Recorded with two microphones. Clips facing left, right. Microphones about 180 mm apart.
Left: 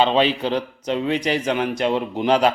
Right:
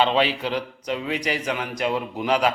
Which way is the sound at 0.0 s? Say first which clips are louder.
Left 3 dB; 20° left (ahead or behind).